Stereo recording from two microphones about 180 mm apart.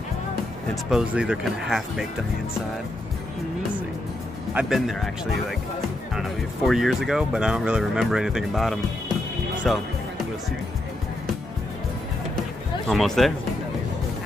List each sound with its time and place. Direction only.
0.8 s speech: 5° right (ahead or behind)
4.6 s speech: centre (ahead or behind)
12.8 s speech: centre (ahead or behind)